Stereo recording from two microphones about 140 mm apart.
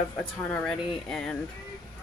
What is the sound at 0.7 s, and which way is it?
Speech, 5° left (ahead or behind).